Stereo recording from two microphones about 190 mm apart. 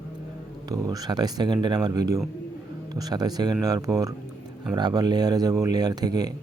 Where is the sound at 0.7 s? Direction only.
20° right (ahead or behind).